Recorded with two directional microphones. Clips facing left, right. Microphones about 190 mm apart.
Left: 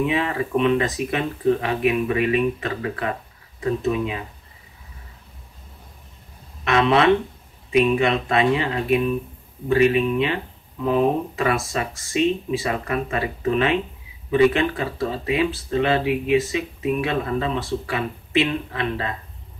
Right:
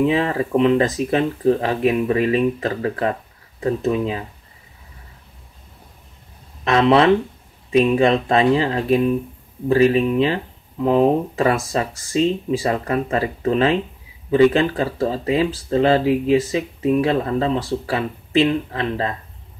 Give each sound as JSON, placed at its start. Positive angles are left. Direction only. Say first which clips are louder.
{"t": 0.0, "sound": "speech", "louder": "right 4 dB", "side_deg": -35}
{"t": 6.6, "sound": "speech", "louder": "right 3 dB", "side_deg": -35}